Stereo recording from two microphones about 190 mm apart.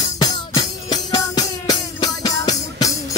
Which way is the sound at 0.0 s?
25° left (ahead or behind).